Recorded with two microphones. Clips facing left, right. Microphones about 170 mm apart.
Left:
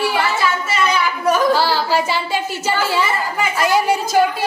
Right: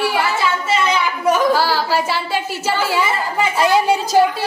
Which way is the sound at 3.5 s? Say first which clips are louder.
Right 1 dB; 25° right (ahead or behind).